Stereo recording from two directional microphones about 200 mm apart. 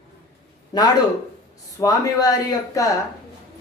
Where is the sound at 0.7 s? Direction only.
20° left (ahead or behind).